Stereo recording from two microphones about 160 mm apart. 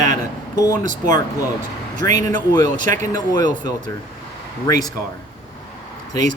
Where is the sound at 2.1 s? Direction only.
25° left (ahead or behind).